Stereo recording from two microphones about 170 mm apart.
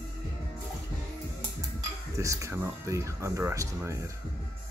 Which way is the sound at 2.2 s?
20° right (ahead or behind).